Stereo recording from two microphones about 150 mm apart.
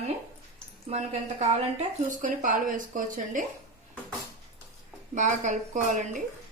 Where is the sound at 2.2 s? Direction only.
60° right (ahead or behind).